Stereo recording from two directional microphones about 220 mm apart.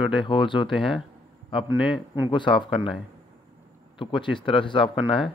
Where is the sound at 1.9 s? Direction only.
10° right (ahead or behind).